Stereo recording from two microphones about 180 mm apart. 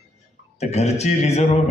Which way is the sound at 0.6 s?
35° left (ahead or behind).